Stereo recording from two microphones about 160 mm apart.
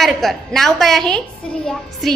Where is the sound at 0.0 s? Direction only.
Centre (ahead or behind).